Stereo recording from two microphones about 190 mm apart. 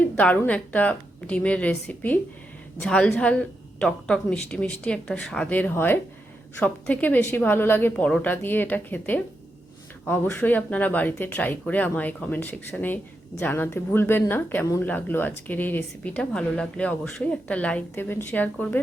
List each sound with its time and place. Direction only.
0.0 s a woman's voice: 10° left (ahead or behind)